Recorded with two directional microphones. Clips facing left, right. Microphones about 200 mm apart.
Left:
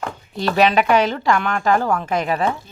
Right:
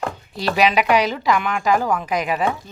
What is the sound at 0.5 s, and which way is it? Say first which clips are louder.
A woman's voice: left 2 dB; 10° right (ahead or behind).